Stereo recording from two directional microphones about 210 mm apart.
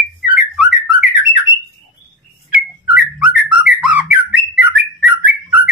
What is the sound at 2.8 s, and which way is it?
Whistling, 5° right (ahead or behind).